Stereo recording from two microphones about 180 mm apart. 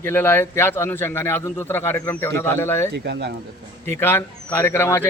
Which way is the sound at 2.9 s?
70° right (ahead or behind).